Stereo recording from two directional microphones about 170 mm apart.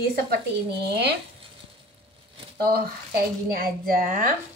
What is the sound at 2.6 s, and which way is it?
Speech, 65° right (ahead or behind).